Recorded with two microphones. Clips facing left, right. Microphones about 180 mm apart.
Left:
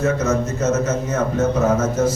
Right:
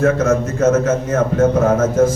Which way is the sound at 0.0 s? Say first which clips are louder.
Right 4 dB; 55° right (ahead or behind).